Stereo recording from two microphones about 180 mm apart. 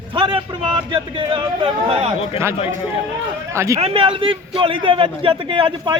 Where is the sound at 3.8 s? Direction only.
30° right (ahead or behind).